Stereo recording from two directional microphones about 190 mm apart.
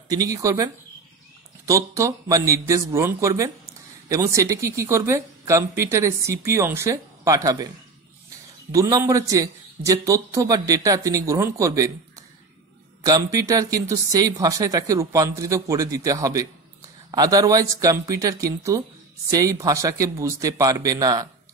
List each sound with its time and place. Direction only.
0.1 s speech: 20° right (ahead or behind)
1.7 s speech: 15° right (ahead or behind)
8.7 s speech: 15° right (ahead or behind)
13.0 s speech: 20° right (ahead or behind)